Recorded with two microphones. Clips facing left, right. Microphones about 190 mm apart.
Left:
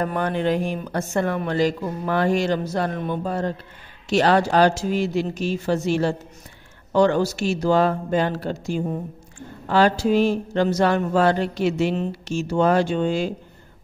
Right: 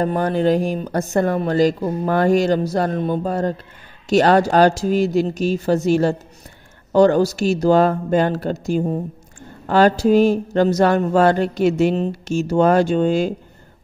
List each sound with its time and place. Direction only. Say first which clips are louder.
0.0 s speech: right 5 dB; 35° right (ahead or behind)